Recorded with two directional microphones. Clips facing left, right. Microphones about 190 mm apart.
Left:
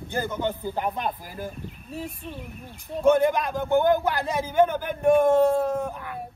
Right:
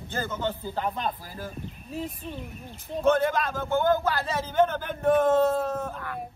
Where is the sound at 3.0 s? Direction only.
15° left (ahead or behind).